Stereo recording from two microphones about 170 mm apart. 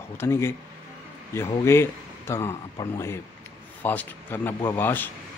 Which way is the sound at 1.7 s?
15° left (ahead or behind).